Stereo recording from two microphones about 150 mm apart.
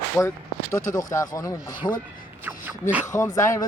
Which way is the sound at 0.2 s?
20° left (ahead or behind).